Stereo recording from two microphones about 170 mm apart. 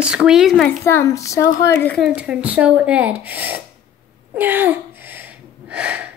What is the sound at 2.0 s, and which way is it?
A woman's voice, 5° right (ahead or behind).